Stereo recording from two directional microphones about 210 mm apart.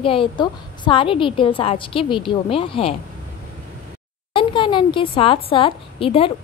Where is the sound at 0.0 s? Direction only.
25° left (ahead or behind).